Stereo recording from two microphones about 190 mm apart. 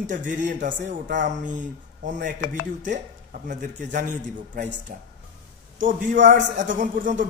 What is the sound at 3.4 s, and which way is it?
Speech, 40° right (ahead or behind).